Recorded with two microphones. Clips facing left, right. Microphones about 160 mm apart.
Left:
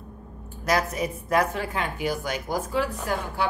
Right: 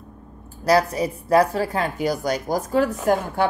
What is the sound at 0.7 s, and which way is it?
A woman's voice, 35° right (ahead or behind).